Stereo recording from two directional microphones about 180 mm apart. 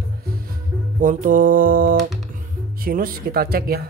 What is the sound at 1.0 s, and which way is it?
Music, 50° right (ahead or behind).